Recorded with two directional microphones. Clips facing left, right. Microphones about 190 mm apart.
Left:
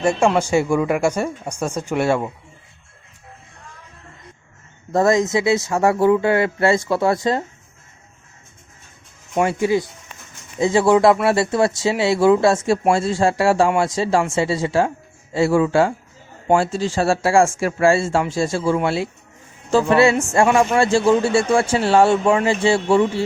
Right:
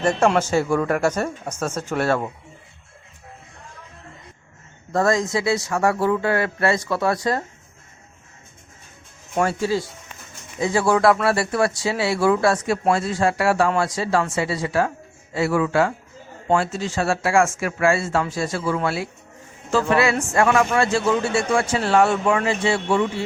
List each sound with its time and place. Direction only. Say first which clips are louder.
0.0 s speech: left 1 dB; 10° left (ahead or behind)
4.9 s speech: left 4 dB; 20° left (ahead or behind)
9.5 s speech: left 4 dB; 20° left (ahead or behind)